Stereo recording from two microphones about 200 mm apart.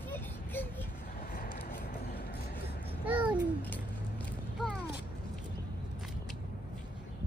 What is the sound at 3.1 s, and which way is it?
Babbling, 5° right (ahead or behind).